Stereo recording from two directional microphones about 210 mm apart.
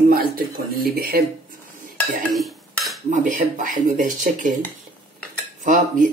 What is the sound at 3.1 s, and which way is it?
Speech, 35° right (ahead or behind).